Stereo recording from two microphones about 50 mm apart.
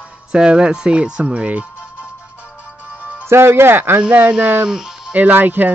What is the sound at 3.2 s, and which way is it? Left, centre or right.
Speech, right.